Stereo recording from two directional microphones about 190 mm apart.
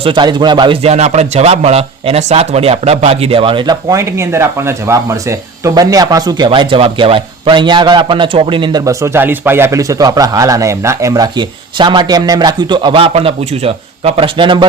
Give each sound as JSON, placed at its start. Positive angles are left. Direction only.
{"t": 0.0, "sound": "speech", "side_deg": -25}